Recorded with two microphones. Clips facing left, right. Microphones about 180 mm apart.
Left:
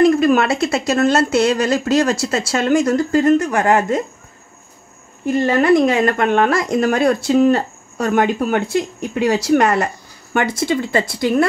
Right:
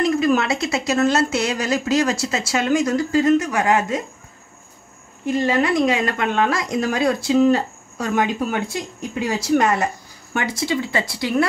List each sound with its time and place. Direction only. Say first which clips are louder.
0.0 s speech: left 5 dB; 60° left (ahead or behind)
5.2 s speech: left 3 dB; 55° left (ahead or behind)
10.3 s speech: left 4 dB; 55° left (ahead or behind)